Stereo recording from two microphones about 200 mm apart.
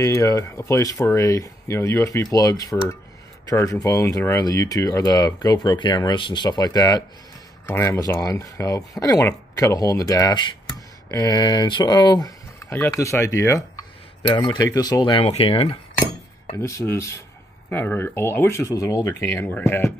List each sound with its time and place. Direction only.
0.0 s speech: 15° left (ahead or behind)
16.5 s speech: 15° left (ahead or behind)